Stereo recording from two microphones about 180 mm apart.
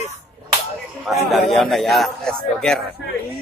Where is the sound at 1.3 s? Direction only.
Centre (ahead or behind).